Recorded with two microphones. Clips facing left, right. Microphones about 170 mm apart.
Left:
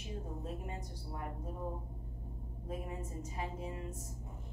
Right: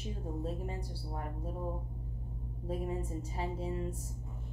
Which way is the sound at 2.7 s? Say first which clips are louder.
Right 6 dB; 30° right (ahead or behind).